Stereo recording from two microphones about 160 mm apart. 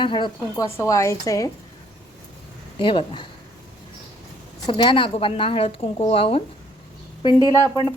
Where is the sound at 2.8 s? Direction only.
30° left (ahead or behind).